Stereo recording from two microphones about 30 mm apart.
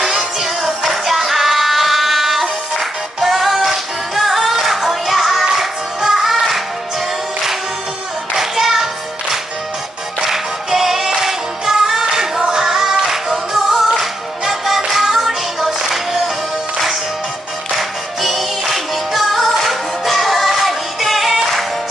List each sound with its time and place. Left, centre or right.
0.4 s music: centre
8.4 s clapping: centre
10.2 s music: centre
17.7 s music: centre